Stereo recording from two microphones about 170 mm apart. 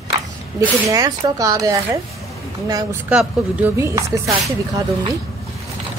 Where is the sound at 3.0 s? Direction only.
10° right (ahead or behind).